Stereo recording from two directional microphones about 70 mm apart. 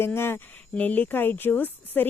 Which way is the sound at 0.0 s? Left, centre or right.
Left.